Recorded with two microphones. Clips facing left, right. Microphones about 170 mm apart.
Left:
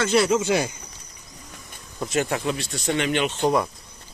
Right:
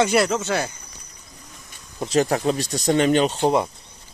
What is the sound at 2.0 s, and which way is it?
Speech, 35° right (ahead or behind).